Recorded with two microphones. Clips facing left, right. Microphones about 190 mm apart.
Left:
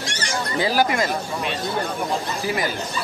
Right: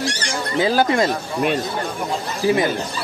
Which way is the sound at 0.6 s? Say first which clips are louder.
Right 4 dB; 20° right (ahead or behind).